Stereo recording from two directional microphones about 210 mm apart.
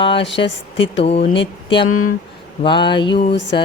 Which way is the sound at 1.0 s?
30° left (ahead or behind).